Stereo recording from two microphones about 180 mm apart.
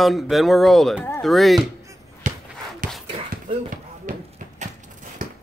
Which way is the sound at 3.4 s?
50° right (ahead or behind).